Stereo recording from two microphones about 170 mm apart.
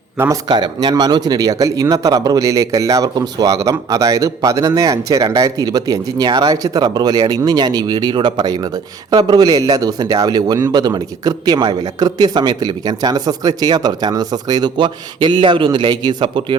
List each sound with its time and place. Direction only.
0.2 s speech: 20° right (ahead or behind)